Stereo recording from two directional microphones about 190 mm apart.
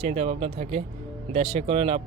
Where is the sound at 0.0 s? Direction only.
35° right (ahead or behind).